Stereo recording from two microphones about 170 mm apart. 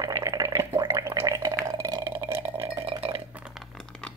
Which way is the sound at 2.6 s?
35° right (ahead or behind).